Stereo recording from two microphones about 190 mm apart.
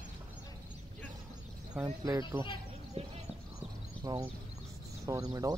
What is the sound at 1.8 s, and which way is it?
Speech, 15° right (ahead or behind).